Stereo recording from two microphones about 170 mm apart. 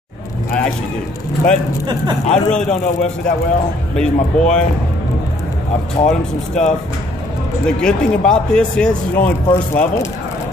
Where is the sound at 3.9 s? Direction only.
5° left (ahead or behind).